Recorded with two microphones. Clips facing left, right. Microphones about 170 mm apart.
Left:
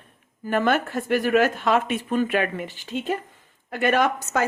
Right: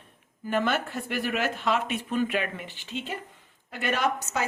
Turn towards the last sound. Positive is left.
turn(degrees=50)  # may be behind; listen again after turning